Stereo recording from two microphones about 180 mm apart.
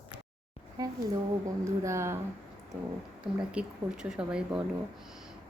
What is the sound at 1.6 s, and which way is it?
Speech, 15° right (ahead or behind).